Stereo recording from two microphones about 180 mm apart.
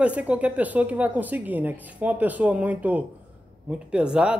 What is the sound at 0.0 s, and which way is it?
Speech, 5° right (ahead or behind).